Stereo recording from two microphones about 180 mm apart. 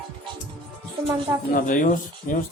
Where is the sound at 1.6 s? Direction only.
45° left (ahead or behind).